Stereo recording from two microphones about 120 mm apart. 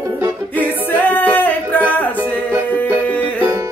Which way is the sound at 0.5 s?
15° left (ahead or behind).